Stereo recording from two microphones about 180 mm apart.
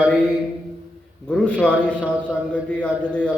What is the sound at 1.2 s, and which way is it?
Speech, 5° left (ahead or behind).